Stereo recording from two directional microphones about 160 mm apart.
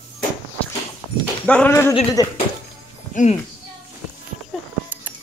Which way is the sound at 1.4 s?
10° left (ahead or behind).